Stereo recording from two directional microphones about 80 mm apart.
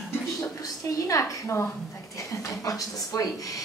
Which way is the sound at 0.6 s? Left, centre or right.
Left.